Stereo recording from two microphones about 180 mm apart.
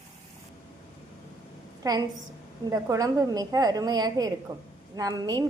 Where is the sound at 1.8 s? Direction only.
20° right (ahead or behind).